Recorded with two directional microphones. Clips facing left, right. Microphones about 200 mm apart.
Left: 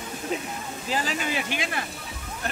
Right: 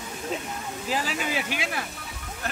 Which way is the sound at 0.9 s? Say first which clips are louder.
Left 1 dB; 5° right (ahead or behind).